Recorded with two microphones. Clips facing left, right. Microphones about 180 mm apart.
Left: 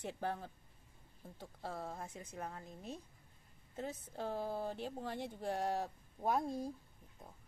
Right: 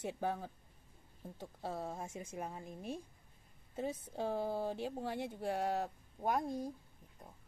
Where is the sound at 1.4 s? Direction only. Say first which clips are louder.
Right 3 dB; 20° right (ahead or behind); by 6.5 s centre (ahead or behind).